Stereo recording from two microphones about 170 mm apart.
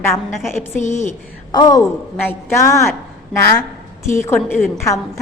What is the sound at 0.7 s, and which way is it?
Speech, 45° left (ahead or behind).